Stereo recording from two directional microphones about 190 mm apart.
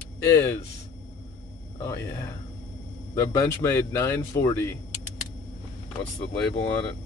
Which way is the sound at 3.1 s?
15° left (ahead or behind).